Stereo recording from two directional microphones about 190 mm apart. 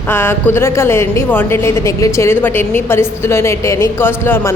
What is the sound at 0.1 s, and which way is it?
A woman's voice, 10° left (ahead or behind).